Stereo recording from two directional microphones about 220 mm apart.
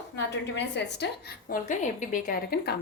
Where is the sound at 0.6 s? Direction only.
50° left (ahead or behind).